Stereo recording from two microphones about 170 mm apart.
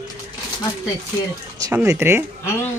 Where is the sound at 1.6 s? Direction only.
20° right (ahead or behind).